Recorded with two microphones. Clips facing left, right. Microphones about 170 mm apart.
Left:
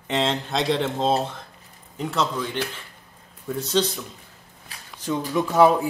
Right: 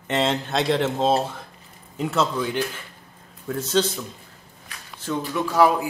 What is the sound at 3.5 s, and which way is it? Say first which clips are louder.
Speech: right 1 dB; centre (ahead or behind).